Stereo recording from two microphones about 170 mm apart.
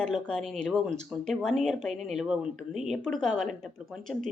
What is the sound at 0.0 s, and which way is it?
Speech, 5° left (ahead or behind).